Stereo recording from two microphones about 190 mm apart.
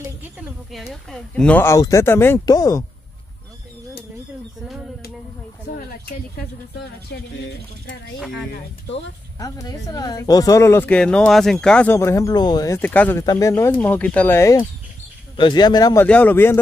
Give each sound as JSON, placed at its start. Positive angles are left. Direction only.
{"t": 0.2, "sound": "speech", "side_deg": -5}
{"t": 5.7, "sound": "a sound", "side_deg": 50}
{"t": 7.1, "sound": "speech", "side_deg": 60}
{"t": 9.4, "sound": "speech", "side_deg": 20}